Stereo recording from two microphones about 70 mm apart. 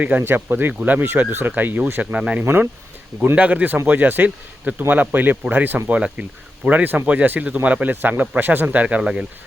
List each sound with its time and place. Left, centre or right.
0.0 s speech: right
2.4 s speech: right
3.3 s speech: right
5.9 s speech: centre